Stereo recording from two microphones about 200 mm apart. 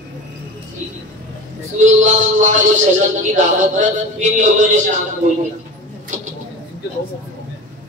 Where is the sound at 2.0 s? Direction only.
40° right (ahead or behind).